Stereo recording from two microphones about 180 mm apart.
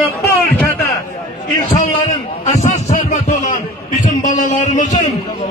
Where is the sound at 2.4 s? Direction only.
45° left (ahead or behind).